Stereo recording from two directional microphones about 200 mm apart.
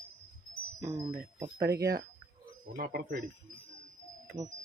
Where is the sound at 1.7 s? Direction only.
15° right (ahead or behind).